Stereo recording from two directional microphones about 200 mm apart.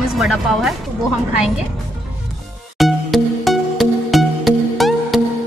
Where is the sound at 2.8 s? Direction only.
Centre (ahead or behind).